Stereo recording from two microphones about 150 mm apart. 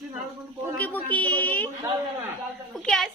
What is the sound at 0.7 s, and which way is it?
Speech, 10° left (ahead or behind).